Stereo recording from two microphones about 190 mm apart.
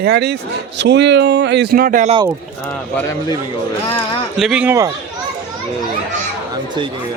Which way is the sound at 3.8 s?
30° left (ahead or behind).